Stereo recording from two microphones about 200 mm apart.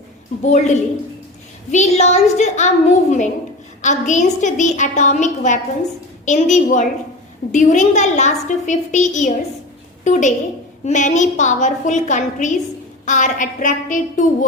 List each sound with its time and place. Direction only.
0.4 s a woman's voice: 35° left (ahead or behind)